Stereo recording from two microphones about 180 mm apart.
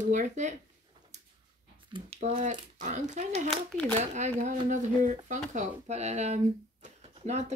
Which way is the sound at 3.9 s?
40° right (ahead or behind).